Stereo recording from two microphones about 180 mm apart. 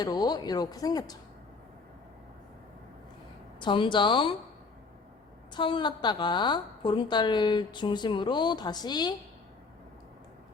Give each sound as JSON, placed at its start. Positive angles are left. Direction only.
{"t": 0.0, "sound": "a woman's voice", "side_deg": 20}
{"t": 3.6, "sound": "a woman's voice", "side_deg": 25}
{"t": 5.5, "sound": "a woman's voice", "side_deg": 25}